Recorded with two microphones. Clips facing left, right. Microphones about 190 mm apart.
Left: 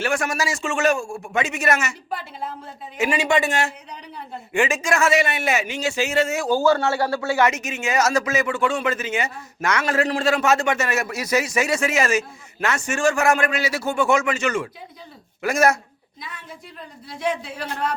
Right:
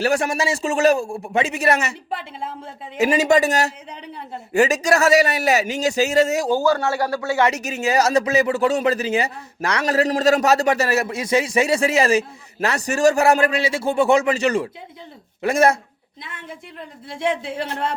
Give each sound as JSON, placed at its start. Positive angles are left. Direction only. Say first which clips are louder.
{"t": 0.0, "sound": "speech", "louder": "right 4 dB", "side_deg": -35}
{"t": 3.0, "sound": "speech", "louder": "right 4 dB", "side_deg": -40}
{"t": 6.9, "sound": "speech", "louder": "even", "side_deg": 25}
{"t": 7.2, "sound": "speech", "louder": "right 1 dB", "side_deg": -25}
{"t": 17.1, "sound": "speech", "louder": "right 3 dB", "side_deg": -25}